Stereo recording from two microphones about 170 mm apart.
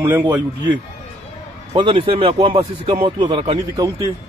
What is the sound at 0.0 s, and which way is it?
Speech, 10° right (ahead or behind).